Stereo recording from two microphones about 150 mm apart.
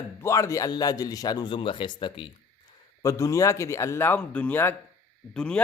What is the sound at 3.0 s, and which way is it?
Speech, 20° left (ahead or behind).